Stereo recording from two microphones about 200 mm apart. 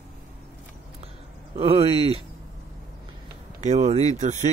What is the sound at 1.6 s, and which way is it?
Speech, 30° right (ahead or behind).